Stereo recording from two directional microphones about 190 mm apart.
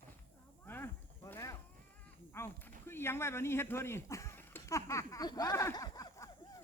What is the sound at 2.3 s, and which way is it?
Speech, 10° left (ahead or behind).